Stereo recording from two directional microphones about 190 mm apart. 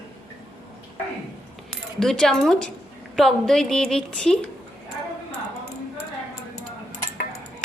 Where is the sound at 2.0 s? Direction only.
5° left (ahead or behind).